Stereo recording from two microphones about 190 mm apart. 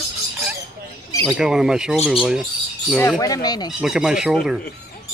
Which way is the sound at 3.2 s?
20° left (ahead or behind).